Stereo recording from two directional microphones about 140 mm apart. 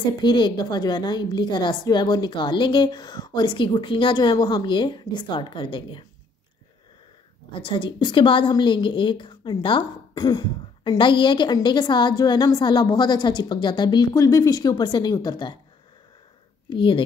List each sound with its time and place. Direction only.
0.2 s a woman's voice: 35° left (ahead or behind)
7.5 s a woman's voice: 40° left (ahead or behind)
16.6 s speech: 35° left (ahead or behind)